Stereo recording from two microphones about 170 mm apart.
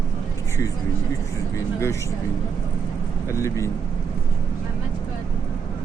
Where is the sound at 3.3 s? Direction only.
15° left (ahead or behind).